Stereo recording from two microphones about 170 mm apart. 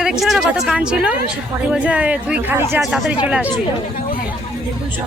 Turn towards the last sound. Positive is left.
turn(degrees=-10)  # may be behind; listen again after turning